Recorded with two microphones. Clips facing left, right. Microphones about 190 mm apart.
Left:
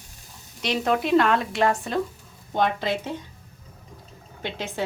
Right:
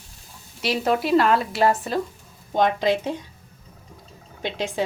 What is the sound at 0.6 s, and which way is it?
A woman's voice, 5° right (ahead or behind).